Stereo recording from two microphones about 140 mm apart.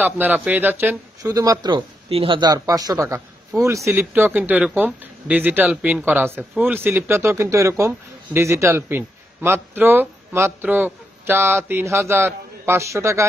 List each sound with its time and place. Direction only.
0.0 s speech: 10° right (ahead or behind)
1.2 s speech: 25° right (ahead or behind)